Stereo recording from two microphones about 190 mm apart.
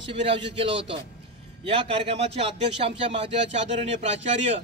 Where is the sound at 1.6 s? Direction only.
30° right (ahead or behind).